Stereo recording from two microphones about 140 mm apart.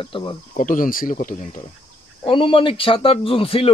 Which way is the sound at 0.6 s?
75° left (ahead or behind).